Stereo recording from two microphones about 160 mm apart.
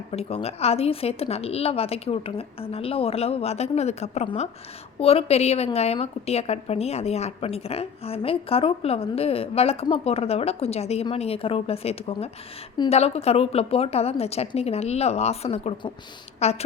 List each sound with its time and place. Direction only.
0.1 s a woman's voice: 40° left (ahead or behind)